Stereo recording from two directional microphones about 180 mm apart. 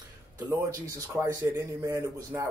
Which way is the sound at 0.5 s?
20° right (ahead or behind).